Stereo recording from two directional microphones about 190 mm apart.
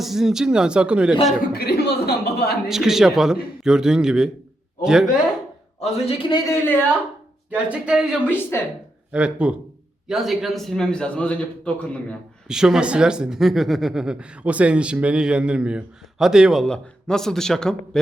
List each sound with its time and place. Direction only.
0.0 s speech: centre (ahead or behind)
1.5 s a man's voice: 55° left (ahead or behind)
2.6 s speech: centre (ahead or behind)
5.8 s a man's voice: 30° left (ahead or behind)
6.5 s a woman's voice: 10° left (ahead or behind)
7.5 s speech: 5° right (ahead or behind)
8.3 s a woman's voice: 10° left (ahead or behind)
9.1 s speech: 5° right (ahead or behind)